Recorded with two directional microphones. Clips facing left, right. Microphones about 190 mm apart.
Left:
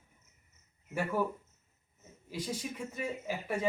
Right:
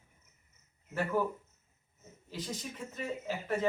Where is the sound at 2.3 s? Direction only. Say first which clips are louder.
Left 3 dB; 10° left (ahead or behind).